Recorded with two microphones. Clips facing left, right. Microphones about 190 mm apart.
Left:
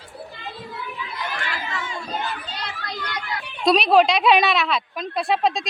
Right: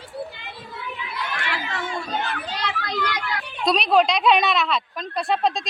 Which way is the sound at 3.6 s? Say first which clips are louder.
Left 3 dB; centre (ahead or behind).